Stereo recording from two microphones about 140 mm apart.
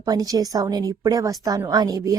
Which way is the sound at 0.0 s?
25° right (ahead or behind).